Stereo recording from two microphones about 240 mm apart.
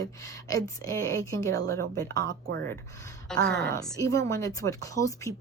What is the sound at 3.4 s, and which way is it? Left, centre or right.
Speech, right.